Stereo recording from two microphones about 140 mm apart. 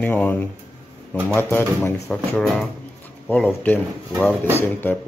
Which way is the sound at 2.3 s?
Centre (ahead or behind).